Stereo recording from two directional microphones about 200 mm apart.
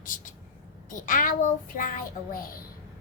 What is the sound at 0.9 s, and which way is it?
Baby cry, 40° left (ahead or behind).